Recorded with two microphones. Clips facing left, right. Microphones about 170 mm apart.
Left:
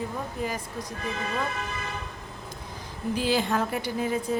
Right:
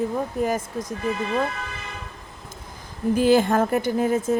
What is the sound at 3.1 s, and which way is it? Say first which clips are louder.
A woman's voice: right 8 dB; 50° right (ahead or behind).